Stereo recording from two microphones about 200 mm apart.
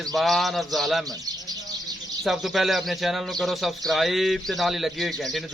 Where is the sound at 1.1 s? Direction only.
20° right (ahead or behind).